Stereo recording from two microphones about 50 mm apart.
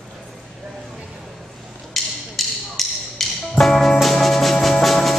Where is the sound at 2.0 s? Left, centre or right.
Centre.